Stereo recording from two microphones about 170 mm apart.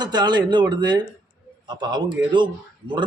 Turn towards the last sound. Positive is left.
turn(degrees=-25)  # may be behind; listen again after turning